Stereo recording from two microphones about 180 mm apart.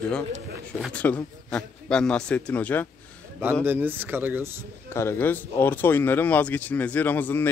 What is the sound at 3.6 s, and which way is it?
Speech, 10° right (ahead or behind).